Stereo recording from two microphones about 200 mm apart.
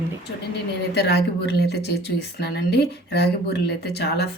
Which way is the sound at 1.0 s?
55° left (ahead or behind).